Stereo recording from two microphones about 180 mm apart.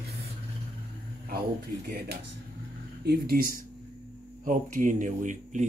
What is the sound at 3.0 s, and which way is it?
Speech, 60° right (ahead or behind).